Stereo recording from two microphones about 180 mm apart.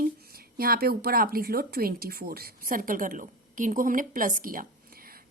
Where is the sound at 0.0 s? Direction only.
55° right (ahead or behind).